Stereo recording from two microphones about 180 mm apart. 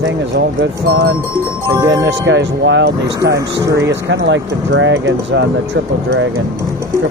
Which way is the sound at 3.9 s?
75° right (ahead or behind).